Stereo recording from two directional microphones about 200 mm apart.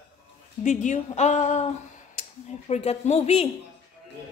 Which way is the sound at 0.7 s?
40° left (ahead or behind).